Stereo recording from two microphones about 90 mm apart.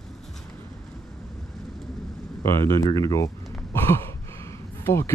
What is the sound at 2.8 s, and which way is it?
Speech, 40° left (ahead or behind).